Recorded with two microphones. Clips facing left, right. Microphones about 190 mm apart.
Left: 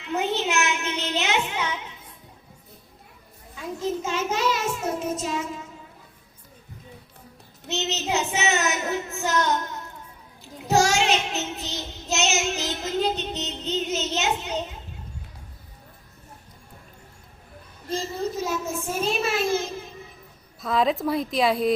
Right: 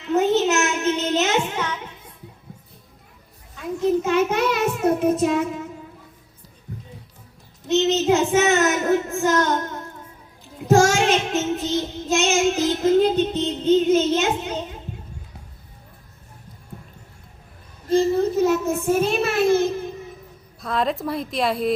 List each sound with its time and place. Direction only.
0.1 s a sound: 45° right (ahead or behind)
3.8 s child singing: 60° right (ahead or behind)
7.7 s child singing: 50° right (ahead or behind)
17.9 s child singing: 60° right (ahead or behind)
20.6 s a woman's voice: centre (ahead or behind)